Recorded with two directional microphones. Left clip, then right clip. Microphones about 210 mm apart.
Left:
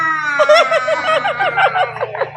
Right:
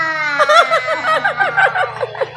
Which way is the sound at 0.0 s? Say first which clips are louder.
Left 1 dB; 10° right (ahead or behind).